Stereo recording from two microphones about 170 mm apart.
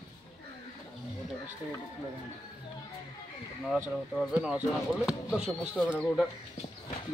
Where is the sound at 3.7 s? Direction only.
5° right (ahead or behind).